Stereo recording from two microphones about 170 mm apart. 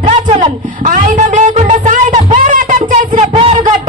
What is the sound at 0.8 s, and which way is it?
Music, 50° right (ahead or behind).